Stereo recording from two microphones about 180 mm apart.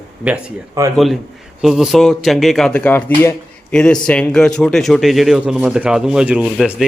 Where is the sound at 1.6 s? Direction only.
Centre (ahead or behind).